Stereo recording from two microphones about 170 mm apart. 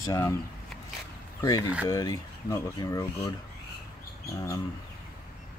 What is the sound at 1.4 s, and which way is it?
Speech, 20° left (ahead or behind).